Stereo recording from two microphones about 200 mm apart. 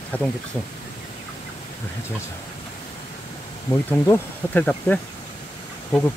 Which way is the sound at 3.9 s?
10° left (ahead or behind).